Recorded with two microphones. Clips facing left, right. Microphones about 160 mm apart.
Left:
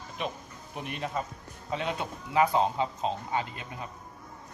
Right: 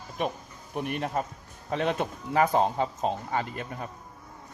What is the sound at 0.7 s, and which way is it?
Speech, 55° right (ahead or behind).